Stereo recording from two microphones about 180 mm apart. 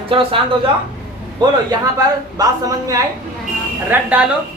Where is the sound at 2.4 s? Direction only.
20° right (ahead or behind).